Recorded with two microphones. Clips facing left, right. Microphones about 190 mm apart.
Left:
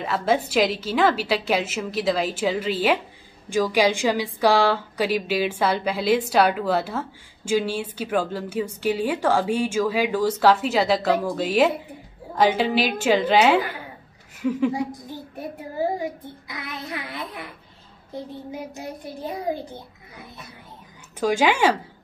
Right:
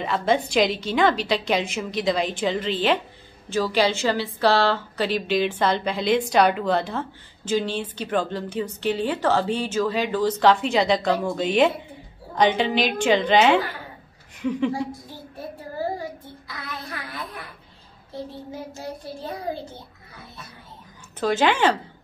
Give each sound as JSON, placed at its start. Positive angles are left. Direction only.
{"t": 0.0, "sound": "a woman's voice", "side_deg": 5}
{"t": 14.7, "sound": "a woman's voice", "side_deg": 15}
{"t": 15.8, "sound": "child singing", "side_deg": 20}
{"t": 18.1, "sound": "a woman's voice", "side_deg": 15}